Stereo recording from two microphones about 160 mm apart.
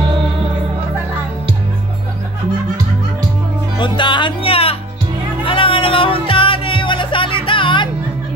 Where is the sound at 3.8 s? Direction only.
30° left (ahead or behind).